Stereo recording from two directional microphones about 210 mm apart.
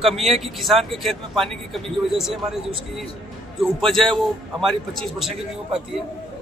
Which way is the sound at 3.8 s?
Centre (ahead or behind).